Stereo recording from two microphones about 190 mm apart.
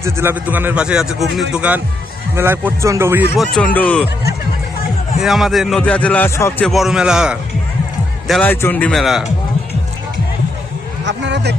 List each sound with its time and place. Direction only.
0.0 s a man's voice: 10° right (ahead or behind)
3.3 s speech: centre (ahead or behind)
5.2 s speech: centre (ahead or behind)
6.7 s speech: centre (ahead or behind)
8.3 s speech: 10° left (ahead or behind)
11.0 s a man's voice: 65° right (ahead or behind)